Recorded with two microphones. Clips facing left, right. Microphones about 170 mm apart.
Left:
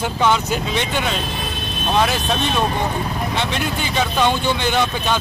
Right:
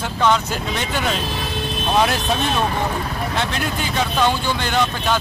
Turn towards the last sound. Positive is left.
turn(degrees=0)  # may be behind; listen again after turning